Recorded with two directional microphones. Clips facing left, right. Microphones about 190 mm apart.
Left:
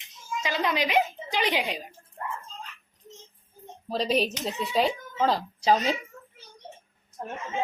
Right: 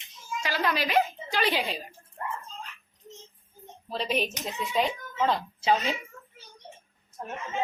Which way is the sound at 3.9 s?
40° left (ahead or behind).